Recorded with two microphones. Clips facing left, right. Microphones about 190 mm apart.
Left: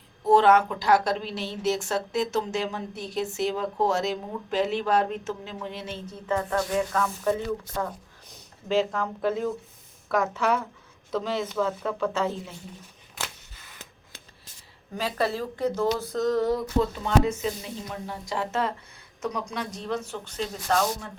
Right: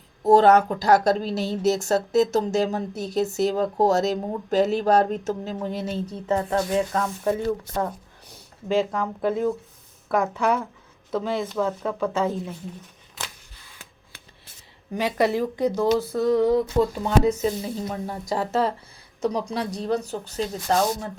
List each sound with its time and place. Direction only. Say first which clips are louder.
0.2 s a woman's voice: right 3 dB; 40° right (ahead or behind)
6.2 s speech: right 3 dB; 25° right (ahead or behind)
8.3 s speech: right 2 dB; 10° right (ahead or behind)
14.9 s speech: right 5 dB; 15° right (ahead or behind)
17.2 s a woman's voice: right 6 dB; 35° right (ahead or behind)